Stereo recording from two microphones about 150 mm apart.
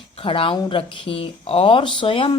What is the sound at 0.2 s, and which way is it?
A woman's voice, 35° left (ahead or behind).